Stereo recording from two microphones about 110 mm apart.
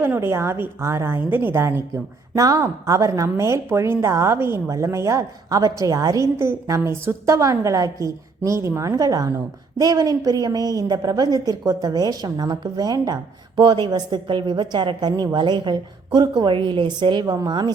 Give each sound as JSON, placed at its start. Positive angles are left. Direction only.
{"t": 0.0, "sound": "a woman's voice", "side_deg": -20}